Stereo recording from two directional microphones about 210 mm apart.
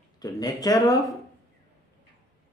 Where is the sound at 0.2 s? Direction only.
20° left (ahead or behind).